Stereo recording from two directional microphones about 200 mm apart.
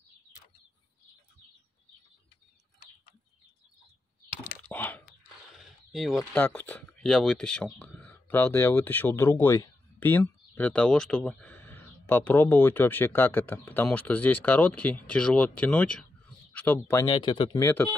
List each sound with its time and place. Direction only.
4.6 s a sound: 10° left (ahead or behind)
5.6 s speech: centre (ahead or behind); by 17.6 s 25° left (ahead or behind)
17.6 s speech: 10° left (ahead or behind)